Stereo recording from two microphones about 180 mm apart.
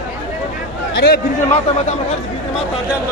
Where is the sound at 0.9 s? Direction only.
60° left (ahead or behind).